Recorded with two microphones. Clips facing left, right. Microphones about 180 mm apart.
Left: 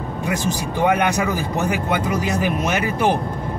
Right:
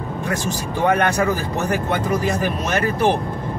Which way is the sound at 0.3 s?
15° left (ahead or behind).